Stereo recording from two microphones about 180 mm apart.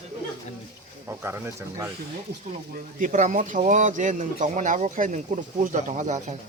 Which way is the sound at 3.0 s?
45° right (ahead or behind).